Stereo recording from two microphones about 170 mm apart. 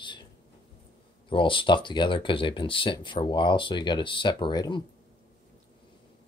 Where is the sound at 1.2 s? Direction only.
30° left (ahead or behind).